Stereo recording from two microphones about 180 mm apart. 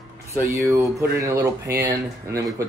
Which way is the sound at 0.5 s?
15° right (ahead or behind).